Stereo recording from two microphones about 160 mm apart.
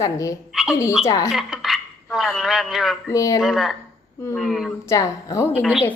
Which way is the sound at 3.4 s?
Centre (ahead or behind).